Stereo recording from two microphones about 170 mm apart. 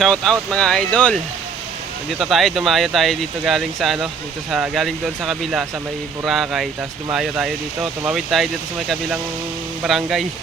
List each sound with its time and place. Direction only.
0.0 s speech: 5° left (ahead or behind)
9.8 s speech: centre (ahead or behind)